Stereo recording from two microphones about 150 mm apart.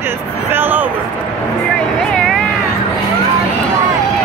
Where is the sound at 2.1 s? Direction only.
Centre (ahead or behind).